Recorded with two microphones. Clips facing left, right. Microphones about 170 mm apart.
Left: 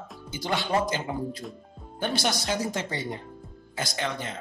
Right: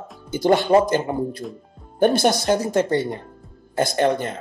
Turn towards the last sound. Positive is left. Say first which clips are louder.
# right 12 dB
turn(degrees=-55)  # may be behind; listen again after turning